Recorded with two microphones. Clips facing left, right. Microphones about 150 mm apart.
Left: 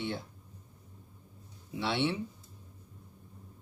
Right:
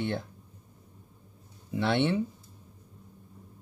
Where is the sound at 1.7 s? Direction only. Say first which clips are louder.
Right 5 dB; 55° right (ahead or behind).